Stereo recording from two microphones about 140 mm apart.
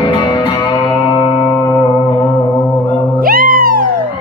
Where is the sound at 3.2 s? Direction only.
90° right.